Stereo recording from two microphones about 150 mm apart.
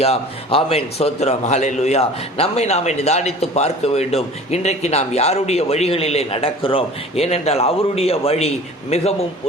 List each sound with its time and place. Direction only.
0.0 s a man's voice: 40° left (ahead or behind)